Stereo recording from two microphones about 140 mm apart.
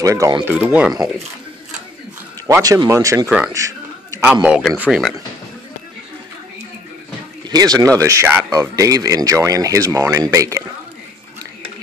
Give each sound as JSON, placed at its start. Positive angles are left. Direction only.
{"t": 0.0, "sound": "speech", "side_deg": -20}
{"t": 0.5, "sound": "speech", "side_deg": -10}
{"t": 2.4, "sound": "speech", "side_deg": -25}
{"t": 3.3, "sound": "speech", "side_deg": -5}
{"t": 3.5, "sound": "a sound", "side_deg": -20}
{"t": 4.2, "sound": "speech", "side_deg": -10}
{"t": 7.4, "sound": "speech", "side_deg": -30}